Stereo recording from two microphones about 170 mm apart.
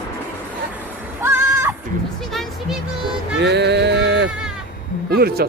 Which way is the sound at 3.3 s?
90° right.